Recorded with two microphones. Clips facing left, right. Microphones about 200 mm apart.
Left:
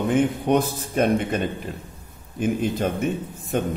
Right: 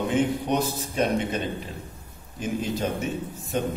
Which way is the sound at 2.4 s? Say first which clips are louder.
Left 5 dB; 55° left (ahead or behind).